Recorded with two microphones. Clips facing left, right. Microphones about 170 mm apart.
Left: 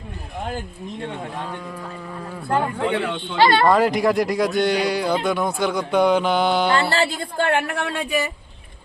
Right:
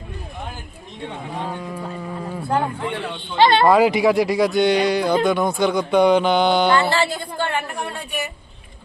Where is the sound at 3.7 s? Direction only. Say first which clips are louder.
Right 2 dB; 5° right (ahead or behind).